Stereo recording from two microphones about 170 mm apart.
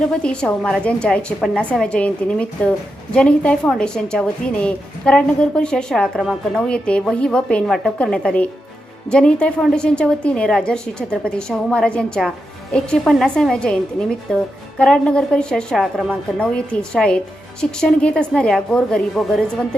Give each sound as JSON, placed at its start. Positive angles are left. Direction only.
{"t": 0.1, "sound": "a woman's voice", "side_deg": 5}